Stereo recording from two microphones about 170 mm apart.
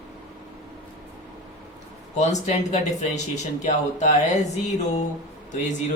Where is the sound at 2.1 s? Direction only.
45° left (ahead or behind).